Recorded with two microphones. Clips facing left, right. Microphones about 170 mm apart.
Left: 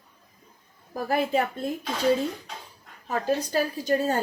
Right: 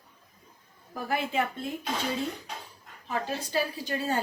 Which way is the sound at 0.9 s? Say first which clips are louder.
Left 5 dB; 40° left (ahead or behind).